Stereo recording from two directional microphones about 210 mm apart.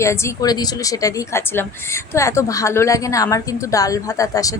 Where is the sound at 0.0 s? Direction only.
15° left (ahead or behind).